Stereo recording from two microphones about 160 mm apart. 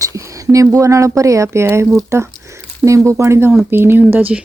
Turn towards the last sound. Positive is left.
turn(degrees=-10)  # may be behind; listen again after turning